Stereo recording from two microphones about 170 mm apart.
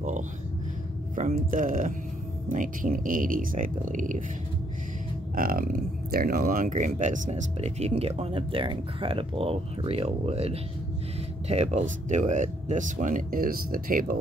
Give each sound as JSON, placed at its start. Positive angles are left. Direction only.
{"t": 1.1, "sound": "speech", "side_deg": -50}
{"t": 5.3, "sound": "speech", "side_deg": -60}